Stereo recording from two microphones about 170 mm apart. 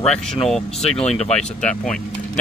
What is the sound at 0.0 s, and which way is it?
A man's voice, 5° left (ahead or behind).